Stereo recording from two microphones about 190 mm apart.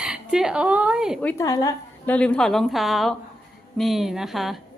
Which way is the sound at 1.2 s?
15° left (ahead or behind).